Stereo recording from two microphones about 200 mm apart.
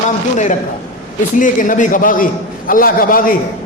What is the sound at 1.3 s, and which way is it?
A man's voice, 40° left (ahead or behind).